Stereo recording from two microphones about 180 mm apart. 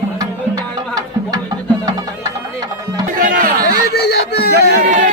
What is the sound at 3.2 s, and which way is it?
Music, 50° right (ahead or behind).